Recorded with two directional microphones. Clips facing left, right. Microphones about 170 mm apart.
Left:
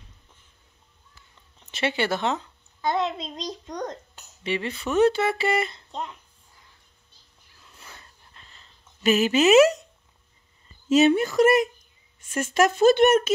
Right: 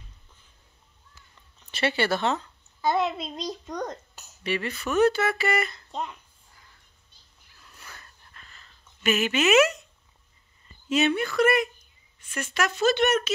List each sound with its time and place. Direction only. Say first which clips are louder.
1.7 s speech: even; 20° left (ahead or behind)
2.8 s a child's voice: right 1 dB; 5° right (ahead or behind)
4.4 s speech: left 1 dB; 20° left (ahead or behind)
5.9 s a sound: right 1 dB; 5° right (ahead or behind)
7.6 s a sound: even; 25° left (ahead or behind)
10.9 s speech: left 6 dB; 40° left (ahead or behind)